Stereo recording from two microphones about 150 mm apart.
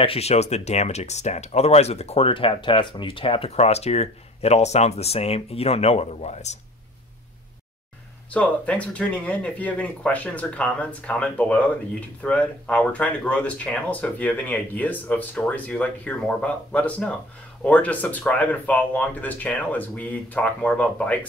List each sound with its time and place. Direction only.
0.0 s speech: 40° left (ahead or behind)
8.3 s speech: 10° left (ahead or behind)